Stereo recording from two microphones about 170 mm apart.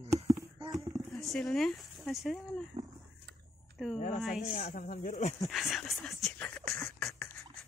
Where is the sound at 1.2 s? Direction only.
Centre (ahead or behind).